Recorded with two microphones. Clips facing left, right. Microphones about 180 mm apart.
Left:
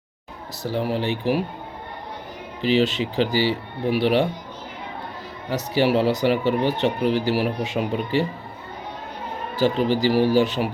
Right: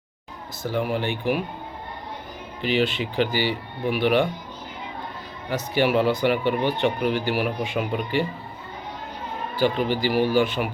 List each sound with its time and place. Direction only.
0.6 s speech: 35° left (ahead or behind)
2.6 s speech: 35° left (ahead or behind)
5.5 s speech: 35° left (ahead or behind)
9.6 s speech: 40° left (ahead or behind)